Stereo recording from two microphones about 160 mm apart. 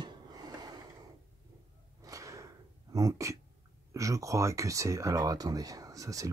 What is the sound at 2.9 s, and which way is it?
Speech, 20° right (ahead or behind).